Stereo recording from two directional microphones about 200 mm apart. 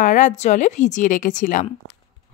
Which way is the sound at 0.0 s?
40° left (ahead or behind).